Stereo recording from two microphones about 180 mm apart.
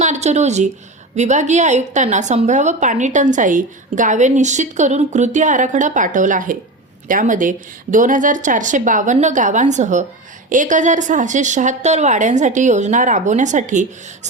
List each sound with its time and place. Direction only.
0.0 s a woman's voice: 40° right (ahead or behind)